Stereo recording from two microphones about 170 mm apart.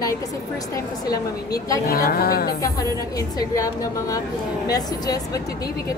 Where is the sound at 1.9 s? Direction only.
65° left (ahead or behind).